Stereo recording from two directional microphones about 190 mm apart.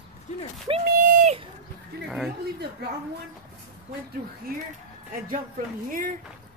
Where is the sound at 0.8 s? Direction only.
50° right (ahead or behind).